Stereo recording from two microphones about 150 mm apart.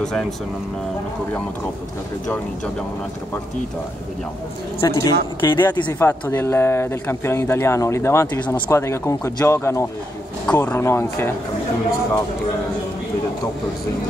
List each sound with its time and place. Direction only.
0.0 s speech: centre (ahead or behind)
4.8 s speech: 20° left (ahead or behind)